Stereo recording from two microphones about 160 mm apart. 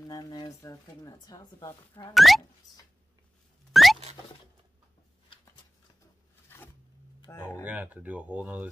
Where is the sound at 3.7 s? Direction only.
Centre (ahead or behind).